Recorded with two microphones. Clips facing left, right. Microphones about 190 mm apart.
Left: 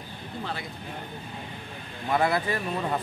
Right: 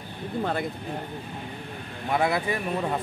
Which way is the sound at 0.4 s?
50° right (ahead or behind).